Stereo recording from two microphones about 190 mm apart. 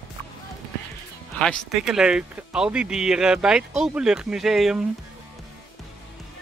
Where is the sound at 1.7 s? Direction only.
5° right (ahead or behind).